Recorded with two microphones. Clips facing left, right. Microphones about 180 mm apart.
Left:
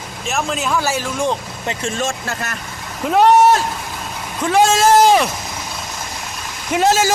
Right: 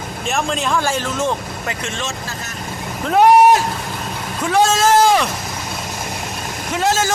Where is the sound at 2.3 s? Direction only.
65° left (ahead or behind).